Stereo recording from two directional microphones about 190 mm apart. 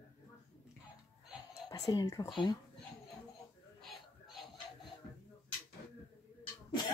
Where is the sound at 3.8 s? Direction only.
Centre (ahead or behind).